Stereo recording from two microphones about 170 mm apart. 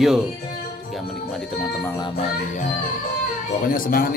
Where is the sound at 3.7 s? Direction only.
60° left (ahead or behind).